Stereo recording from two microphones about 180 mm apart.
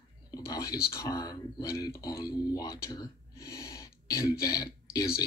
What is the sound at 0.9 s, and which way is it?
Speech, 20° left (ahead or behind).